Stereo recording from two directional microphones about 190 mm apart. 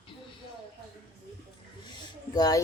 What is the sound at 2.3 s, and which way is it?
Speech, 20° left (ahead or behind).